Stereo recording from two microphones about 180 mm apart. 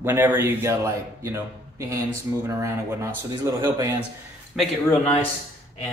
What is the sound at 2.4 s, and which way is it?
Speech, 15° right (ahead or behind).